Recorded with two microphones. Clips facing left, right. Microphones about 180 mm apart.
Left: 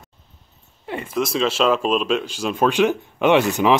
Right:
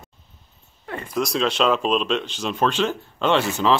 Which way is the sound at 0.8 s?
25° left (ahead or behind).